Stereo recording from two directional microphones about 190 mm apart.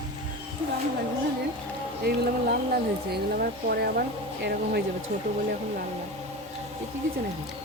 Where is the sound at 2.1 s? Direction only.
50° right (ahead or behind).